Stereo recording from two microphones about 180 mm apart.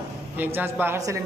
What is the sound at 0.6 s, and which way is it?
Speech, 10° right (ahead or behind).